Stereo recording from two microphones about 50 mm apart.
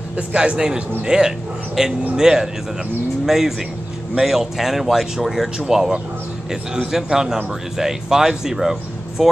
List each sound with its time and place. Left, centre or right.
0.3 s a man's voice: centre